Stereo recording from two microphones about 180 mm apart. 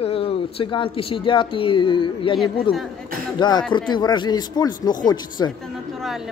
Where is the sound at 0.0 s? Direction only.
30° left (ahead or behind).